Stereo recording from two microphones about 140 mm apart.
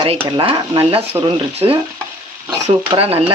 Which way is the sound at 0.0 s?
35° right (ahead or behind).